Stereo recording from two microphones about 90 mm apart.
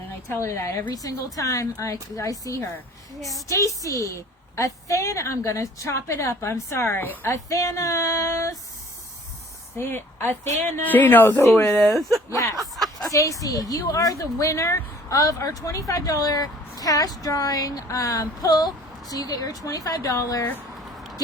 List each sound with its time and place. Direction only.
0.3 s speech: 35° left (ahead or behind)
9.7 s a woman's voice: 25° left (ahead or behind)
12.3 s speech: 40° left (ahead or behind)
12.7 s a sound: centre (ahead or behind)
13.1 s speech: 35° left (ahead or behind)
15.1 s speech: 40° left (ahead or behind)